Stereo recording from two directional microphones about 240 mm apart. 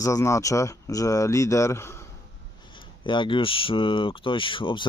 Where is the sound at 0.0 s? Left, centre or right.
Centre.